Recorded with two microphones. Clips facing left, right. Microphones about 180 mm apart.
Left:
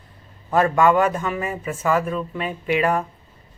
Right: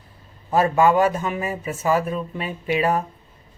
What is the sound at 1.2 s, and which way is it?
Speech, 20° right (ahead or behind).